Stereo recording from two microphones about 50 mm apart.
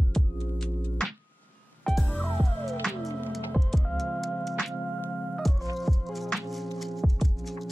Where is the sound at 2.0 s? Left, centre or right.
Left.